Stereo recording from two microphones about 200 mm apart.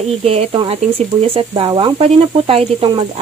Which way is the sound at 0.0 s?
30° right (ahead or behind).